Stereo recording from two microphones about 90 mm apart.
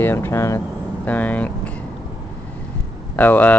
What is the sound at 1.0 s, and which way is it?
Vehicle, 15° left (ahead or behind).